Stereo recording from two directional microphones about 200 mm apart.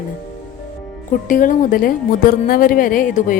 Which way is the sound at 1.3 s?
45° left (ahead or behind).